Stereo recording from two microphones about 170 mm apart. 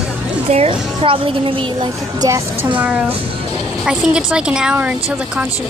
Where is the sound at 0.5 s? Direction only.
35° right (ahead or behind).